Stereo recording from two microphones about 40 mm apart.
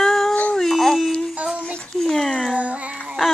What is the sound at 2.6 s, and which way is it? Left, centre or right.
Child singing, right.